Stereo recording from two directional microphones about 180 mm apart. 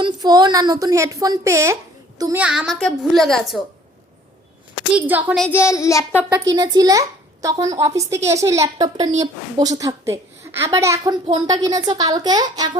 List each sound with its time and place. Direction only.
0.0 s a woman's voice: 20° right (ahead or behind)
2.4 s a woman's voice: 5° right (ahead or behind)
4.9 s a woman's voice: 10° right (ahead or behind)
5.4 s child singing: 15° left (ahead or behind)
6.3 s a woman's voice: 20° right (ahead or behind)